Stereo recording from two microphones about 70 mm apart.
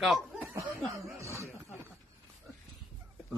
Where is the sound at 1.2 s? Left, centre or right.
Right.